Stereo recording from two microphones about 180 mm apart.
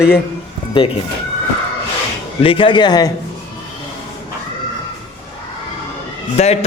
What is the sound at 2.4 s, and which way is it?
Speech, 30° left (ahead or behind).